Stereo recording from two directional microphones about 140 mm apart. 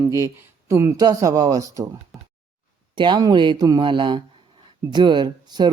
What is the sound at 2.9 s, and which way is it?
Speech, 35° right (ahead or behind).